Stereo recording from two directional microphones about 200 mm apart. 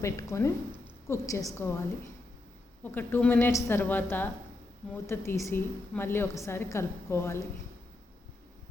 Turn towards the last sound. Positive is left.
turn(degrees=15)  # may be behind; listen again after turning